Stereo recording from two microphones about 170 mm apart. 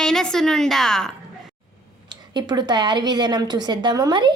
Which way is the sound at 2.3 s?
25° right (ahead or behind).